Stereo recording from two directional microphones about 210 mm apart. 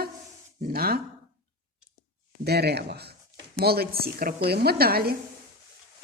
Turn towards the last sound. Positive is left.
turn(degrees=-45)  # may be behind; listen again after turning